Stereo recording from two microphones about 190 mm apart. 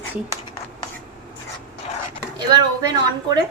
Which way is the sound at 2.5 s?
20° right (ahead or behind).